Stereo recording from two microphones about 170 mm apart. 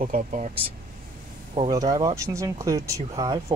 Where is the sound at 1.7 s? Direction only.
20° right (ahead or behind).